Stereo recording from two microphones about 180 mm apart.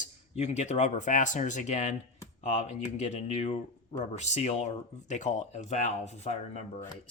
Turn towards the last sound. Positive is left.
turn(degrees=40)  # may be behind; listen again after turning